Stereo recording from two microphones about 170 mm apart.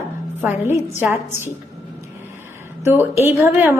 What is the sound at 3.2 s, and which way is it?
Speech, 15° right (ahead or behind).